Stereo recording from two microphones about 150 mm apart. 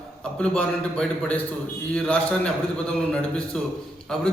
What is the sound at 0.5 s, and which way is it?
A man's voice, 5° left (ahead or behind).